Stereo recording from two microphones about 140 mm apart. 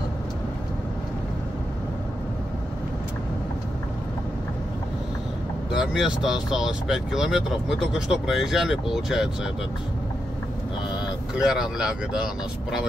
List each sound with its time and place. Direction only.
5.8 s speech: 5° right (ahead or behind)
11.3 s speech: 5° right (ahead or behind)